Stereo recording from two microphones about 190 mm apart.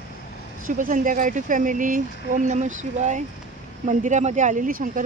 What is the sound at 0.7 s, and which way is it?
Speech, 45° right (ahead or behind).